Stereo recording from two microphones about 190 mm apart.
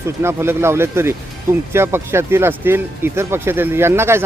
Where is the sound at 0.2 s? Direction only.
15° right (ahead or behind).